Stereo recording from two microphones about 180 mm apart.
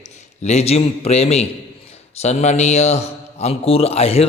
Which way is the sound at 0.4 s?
35° left (ahead or behind).